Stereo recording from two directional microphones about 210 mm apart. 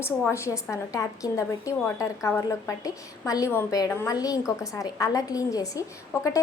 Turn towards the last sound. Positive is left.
turn(degrees=15)  # may be behind; listen again after turning